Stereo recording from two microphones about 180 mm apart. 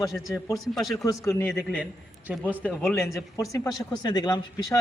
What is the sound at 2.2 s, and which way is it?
Speech, 10° right (ahead or behind).